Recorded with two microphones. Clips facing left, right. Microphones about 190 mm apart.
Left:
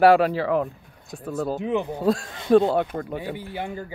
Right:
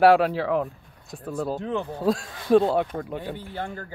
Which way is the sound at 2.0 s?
Centre (ahead or behind).